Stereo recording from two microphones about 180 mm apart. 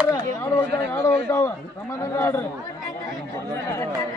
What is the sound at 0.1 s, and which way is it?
A man's voice, 15° left (ahead or behind).